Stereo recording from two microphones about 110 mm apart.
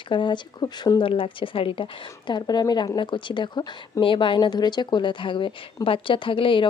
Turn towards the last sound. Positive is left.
turn(degrees=50)  # may be behind; listen again after turning